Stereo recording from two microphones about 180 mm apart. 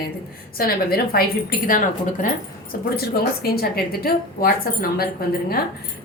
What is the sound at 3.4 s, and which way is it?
A woman's voice, 60° left (ahead or behind).